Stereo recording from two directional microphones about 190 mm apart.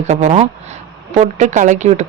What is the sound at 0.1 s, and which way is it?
Speech, 35° right (ahead or behind).